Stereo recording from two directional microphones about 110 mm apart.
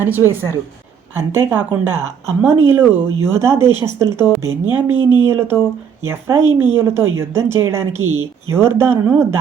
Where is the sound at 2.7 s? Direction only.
20° right (ahead or behind).